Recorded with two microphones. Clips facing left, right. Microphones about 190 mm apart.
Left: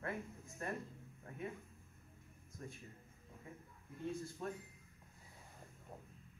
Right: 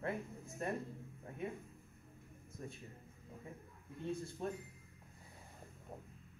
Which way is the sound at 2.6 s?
25° right (ahead or behind).